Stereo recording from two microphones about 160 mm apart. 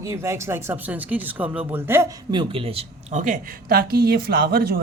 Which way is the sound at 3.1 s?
55° right (ahead or behind).